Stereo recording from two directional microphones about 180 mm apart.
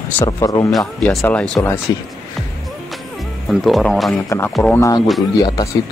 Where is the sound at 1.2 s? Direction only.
5° left (ahead or behind).